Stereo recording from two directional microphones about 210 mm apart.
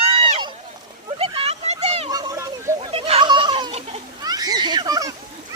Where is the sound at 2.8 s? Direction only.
30° right (ahead or behind).